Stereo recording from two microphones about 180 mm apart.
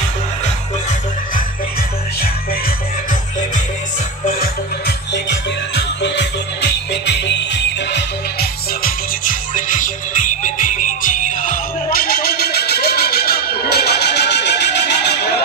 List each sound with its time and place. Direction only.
4.4 s music: 70° left (ahead or behind)